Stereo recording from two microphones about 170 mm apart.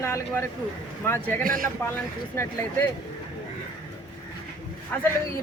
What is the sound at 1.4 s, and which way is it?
Speech, 55° right (ahead or behind).